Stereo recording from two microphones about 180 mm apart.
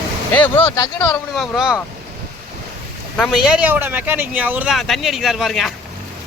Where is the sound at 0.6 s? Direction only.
25° left (ahead or behind).